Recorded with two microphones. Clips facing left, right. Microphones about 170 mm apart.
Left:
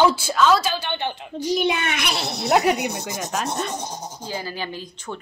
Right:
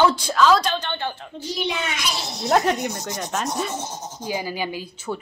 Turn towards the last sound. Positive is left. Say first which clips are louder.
# right 3 dB
turn(degrees=-10)  # may be behind; listen again after turning